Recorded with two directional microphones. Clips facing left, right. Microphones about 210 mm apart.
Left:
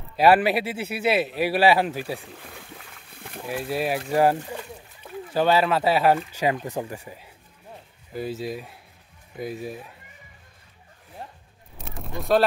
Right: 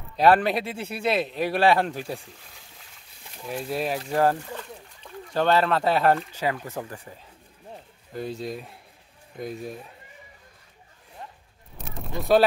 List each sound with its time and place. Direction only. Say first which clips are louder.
0.1 s speech: left 1 dB; 5° left (ahead or behind)
2.1 s boat: left 3 dB; 60° left (ahead or behind)
3.4 s speech: left 2 dB; 5° left (ahead or behind)
6.4 s speech: left 3 dB; 15° left (ahead or behind)
11.2 s a sound: left 2 dB; 35° left (ahead or behind)
11.8 s a sound: right 1 dB; centre (ahead or behind)